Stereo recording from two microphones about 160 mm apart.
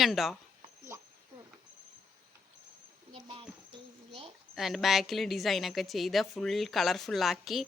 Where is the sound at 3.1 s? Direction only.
35° right (ahead or behind).